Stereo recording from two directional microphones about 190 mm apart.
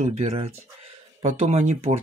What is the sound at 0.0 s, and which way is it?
Speech, 35° right (ahead or behind).